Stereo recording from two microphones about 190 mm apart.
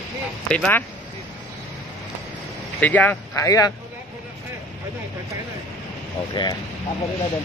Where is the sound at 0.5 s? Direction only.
5° left (ahead or behind).